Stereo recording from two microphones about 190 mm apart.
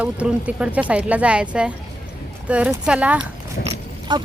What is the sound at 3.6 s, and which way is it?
Speech, 55° left (ahead or behind).